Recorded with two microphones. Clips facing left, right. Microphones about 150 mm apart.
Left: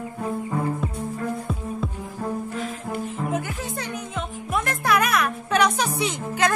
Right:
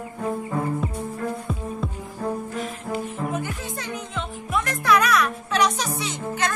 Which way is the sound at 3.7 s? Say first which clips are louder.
Left 1 dB; 45° left (ahead or behind).